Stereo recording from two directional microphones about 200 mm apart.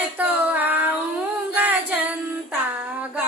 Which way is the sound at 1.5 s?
10° right (ahead or behind).